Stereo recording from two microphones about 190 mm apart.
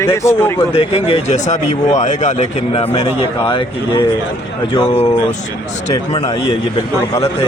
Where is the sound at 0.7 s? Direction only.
30° left (ahead or behind).